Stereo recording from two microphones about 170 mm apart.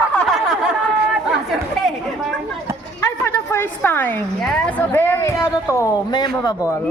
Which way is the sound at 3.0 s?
15° left (ahead or behind).